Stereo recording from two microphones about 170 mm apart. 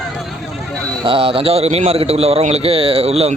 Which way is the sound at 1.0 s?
30° right (ahead or behind).